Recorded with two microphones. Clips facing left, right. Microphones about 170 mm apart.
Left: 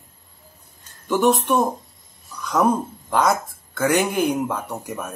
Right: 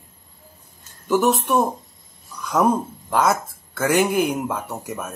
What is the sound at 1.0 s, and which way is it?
Speech, 5° right (ahead or behind).